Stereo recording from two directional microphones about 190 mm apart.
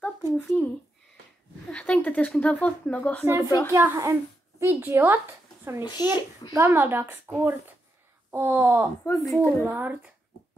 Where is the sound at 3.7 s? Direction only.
15° right (ahead or behind).